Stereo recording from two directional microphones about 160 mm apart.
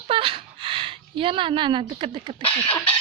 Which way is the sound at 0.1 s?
35° right (ahead or behind).